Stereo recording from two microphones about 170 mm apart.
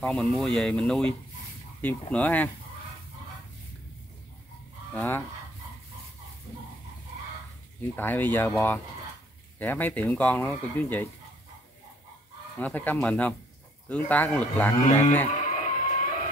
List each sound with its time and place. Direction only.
0.0 s speech: 5° left (ahead or behind)
4.9 s speech: 10° left (ahead or behind)
7.9 s speech: 10° left (ahead or behind)
12.5 s speech: 10° left (ahead or behind)
15.3 s music: 50° left (ahead or behind)